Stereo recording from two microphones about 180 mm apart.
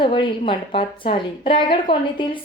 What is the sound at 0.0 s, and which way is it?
A woman's voice, 25° left (ahead or behind).